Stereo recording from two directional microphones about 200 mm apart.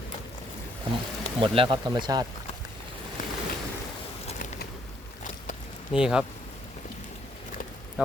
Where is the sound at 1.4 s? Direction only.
25° right (ahead or behind).